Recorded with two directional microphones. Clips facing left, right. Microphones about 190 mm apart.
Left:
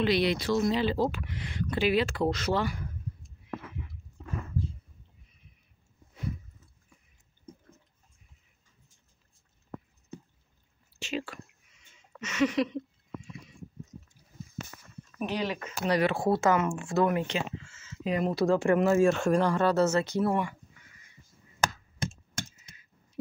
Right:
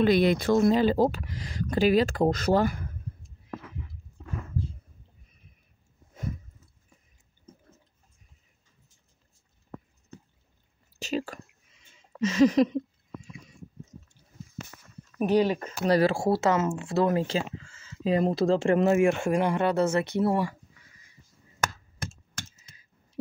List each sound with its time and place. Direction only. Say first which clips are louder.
0.0 s speech: right 5 dB; 45° right (ahead or behind)
11.0 s a sound: right 4 dB; 40° right (ahead or behind)
15.1 s speech: right 9 dB; 40° right (ahead or behind); by 20.3 s 20° right (ahead or behind)